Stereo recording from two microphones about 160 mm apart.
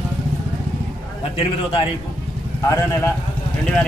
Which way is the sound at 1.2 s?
35° left (ahead or behind).